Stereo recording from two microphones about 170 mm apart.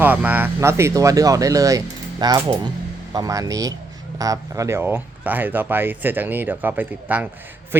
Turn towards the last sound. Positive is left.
turn(degrees=-10)  # may be behind; listen again after turning